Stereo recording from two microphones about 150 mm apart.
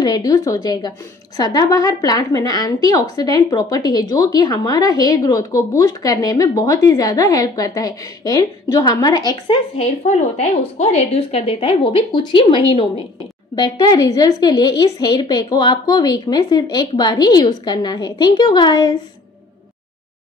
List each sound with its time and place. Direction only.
0.0 s a woman's voice: 25° left (ahead or behind)
9.8 s a woman's voice: 45° left (ahead or behind)
13.6 s a woman's voice: 25° left (ahead or behind)